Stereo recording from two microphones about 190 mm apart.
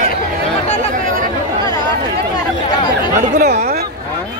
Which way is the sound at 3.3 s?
45° right (ahead or behind).